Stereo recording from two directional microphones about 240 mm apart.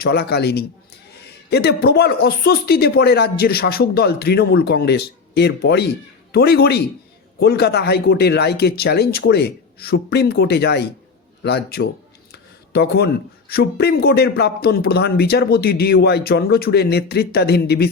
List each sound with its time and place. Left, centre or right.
0.0 s a man's voice: left
12.3 s a sound: left
13.5 s speech: left